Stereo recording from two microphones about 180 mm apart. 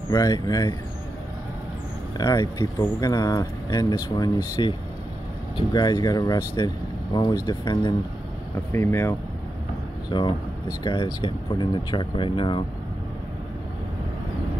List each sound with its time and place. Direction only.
0.1 s speech: 20° left (ahead or behind)
2.1 s speech: 20° left (ahead or behind)
10.1 s speech: 25° left (ahead or behind)